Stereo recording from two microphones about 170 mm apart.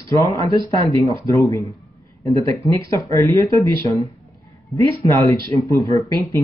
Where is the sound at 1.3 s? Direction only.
20° left (ahead or behind).